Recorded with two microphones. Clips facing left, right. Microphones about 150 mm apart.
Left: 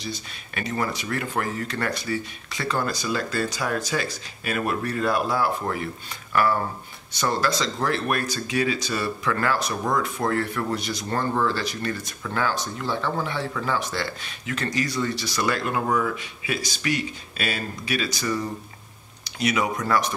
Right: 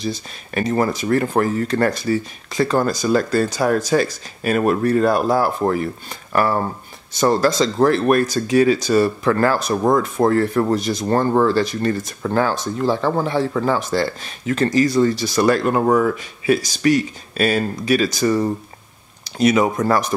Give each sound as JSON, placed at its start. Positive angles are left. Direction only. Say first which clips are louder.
{"t": 0.6, "sound": "speech", "louder": "right 9 dB", "side_deg": -45}